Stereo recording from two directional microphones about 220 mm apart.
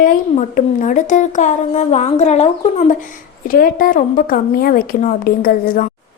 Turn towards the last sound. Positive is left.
turn(degrees=40)  # may be behind; listen again after turning